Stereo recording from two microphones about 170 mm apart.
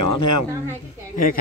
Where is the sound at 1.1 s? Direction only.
55° left (ahead or behind).